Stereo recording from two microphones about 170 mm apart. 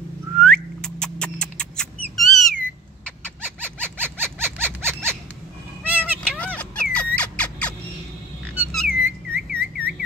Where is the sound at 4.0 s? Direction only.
10° right (ahead or behind).